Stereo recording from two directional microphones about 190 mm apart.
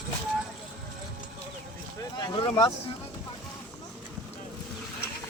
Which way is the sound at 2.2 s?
25° left (ahead or behind).